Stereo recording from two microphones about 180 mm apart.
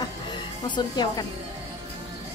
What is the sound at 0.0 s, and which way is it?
Music, 25° left (ahead or behind).